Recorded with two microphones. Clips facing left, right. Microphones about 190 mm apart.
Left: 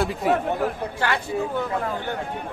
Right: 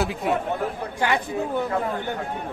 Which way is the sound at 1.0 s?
15° right (ahead or behind).